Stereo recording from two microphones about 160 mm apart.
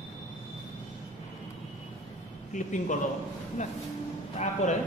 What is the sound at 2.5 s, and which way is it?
A man's voice, 50° left (ahead or behind).